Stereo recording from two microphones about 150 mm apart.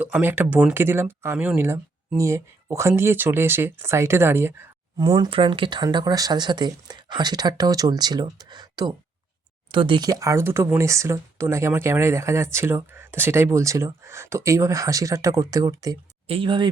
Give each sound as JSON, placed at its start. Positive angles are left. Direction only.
{"t": 0.0, "sound": "speech", "side_deg": -10}
{"t": 4.9, "sound": "speech", "side_deg": -30}
{"t": 16.2, "sound": "speech", "side_deg": -35}